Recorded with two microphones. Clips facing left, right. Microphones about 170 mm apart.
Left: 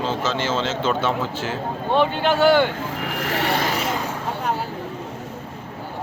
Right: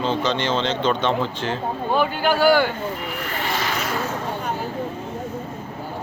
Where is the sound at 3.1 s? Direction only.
90° left; by 3.6 s 65° left (ahead or behind).